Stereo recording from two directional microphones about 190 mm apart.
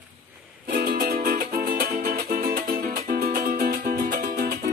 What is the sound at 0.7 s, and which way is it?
Music, 50° right (ahead or behind).